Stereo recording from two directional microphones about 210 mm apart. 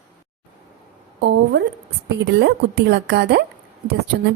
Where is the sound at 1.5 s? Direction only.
50° right (ahead or behind).